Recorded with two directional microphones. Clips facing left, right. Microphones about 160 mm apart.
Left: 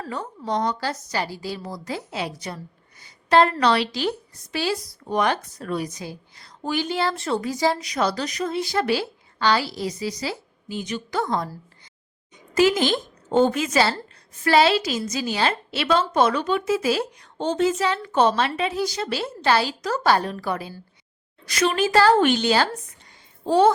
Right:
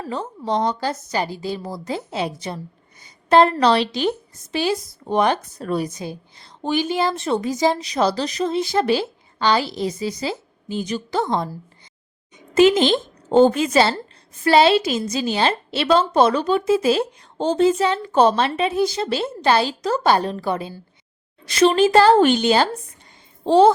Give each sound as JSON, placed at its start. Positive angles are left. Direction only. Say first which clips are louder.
{"t": 0.1, "sound": "a woman's voice", "louder": "right 4 dB", "side_deg": -30}
{"t": 3.6, "sound": "a woman's voice", "louder": "right 3 dB", "side_deg": -30}
{"t": 4.5, "sound": "a woman's voice", "louder": "right 4 dB", "side_deg": -20}
{"t": 12.5, "sound": "a woman's voice", "louder": "right 5 dB", "side_deg": -25}